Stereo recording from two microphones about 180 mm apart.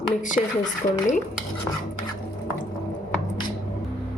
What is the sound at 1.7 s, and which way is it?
Stir, 20° left (ahead or behind).